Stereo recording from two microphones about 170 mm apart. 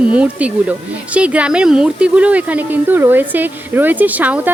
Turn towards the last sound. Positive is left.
turn(degrees=-10)  # may be behind; listen again after turning